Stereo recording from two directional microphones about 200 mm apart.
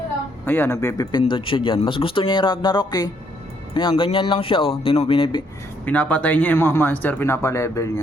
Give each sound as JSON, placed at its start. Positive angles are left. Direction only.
{"t": 0.4, "sound": "speech", "side_deg": 10}
{"t": 1.2, "sound": "speech", "side_deg": 25}
{"t": 5.8, "sound": "speech", "side_deg": 5}